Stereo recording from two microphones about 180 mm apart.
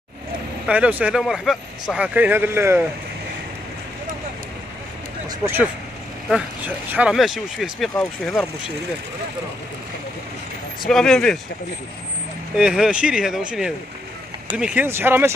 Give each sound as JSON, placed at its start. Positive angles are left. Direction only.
{"t": 0.7, "sound": "a man's voice", "side_deg": -5}
{"t": 5.4, "sound": "a man's voice", "side_deg": -10}
{"t": 10.9, "sound": "speech", "side_deg": 5}
{"t": 12.5, "sound": "a man's voice", "side_deg": -5}